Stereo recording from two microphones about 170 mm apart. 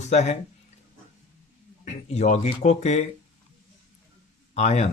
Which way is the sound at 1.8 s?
40° left (ahead or behind).